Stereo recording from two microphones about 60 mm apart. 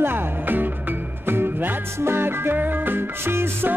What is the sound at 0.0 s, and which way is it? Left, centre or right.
Music, right.